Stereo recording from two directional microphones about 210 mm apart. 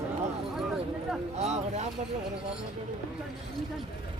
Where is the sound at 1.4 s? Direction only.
30° right (ahead or behind).